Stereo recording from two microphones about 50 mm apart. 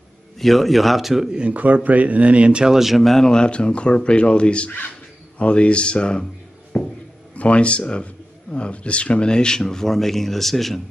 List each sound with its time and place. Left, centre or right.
0.4 s speech: centre
1.3 s a man's voice: right
2.8 s speech: centre
6.7 s a sound: left
7.3 s speech: left; by 10.8 s centre